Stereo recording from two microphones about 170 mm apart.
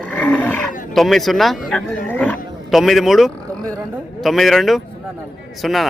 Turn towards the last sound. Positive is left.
turn(degrees=0)  # may be behind; listen again after turning